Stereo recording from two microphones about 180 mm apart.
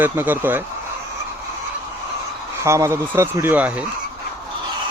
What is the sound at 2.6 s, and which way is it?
Speech, 15° right (ahead or behind).